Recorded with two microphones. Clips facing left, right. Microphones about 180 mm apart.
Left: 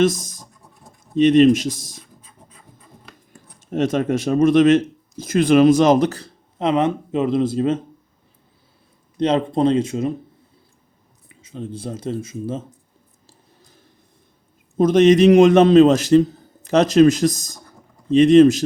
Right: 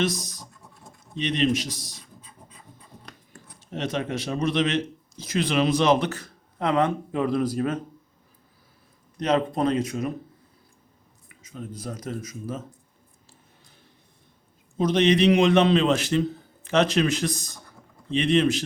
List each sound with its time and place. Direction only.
0.0 s speech: 50° left (ahead or behind)
3.7 s speech: 45° left (ahead or behind)
6.6 s speech: 20° left (ahead or behind)
9.1 s speech: 30° left (ahead or behind)
11.3 s speech: 30° left (ahead or behind)
14.8 s speech: 45° left (ahead or behind)